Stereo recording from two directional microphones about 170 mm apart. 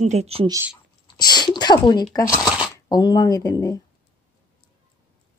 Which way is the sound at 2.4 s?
5° right (ahead or behind).